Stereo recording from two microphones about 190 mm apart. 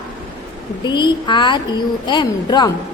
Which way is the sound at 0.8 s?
25° left (ahead or behind).